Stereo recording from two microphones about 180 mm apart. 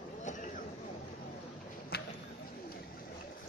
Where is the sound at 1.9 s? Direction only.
60° left (ahead or behind).